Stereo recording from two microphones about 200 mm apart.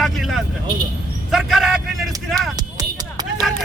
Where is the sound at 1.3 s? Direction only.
Centre (ahead or behind).